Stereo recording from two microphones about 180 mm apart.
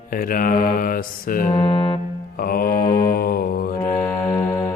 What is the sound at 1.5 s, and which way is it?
Mantra, 30° left (ahead or behind).